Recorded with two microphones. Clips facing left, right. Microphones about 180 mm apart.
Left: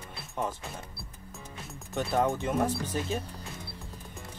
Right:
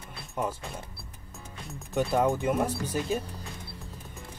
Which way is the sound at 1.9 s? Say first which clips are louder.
Right 2 dB; 15° right (ahead or behind).